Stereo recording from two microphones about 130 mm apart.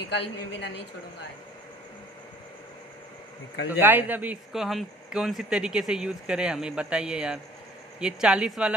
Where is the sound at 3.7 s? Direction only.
15° right (ahead or behind).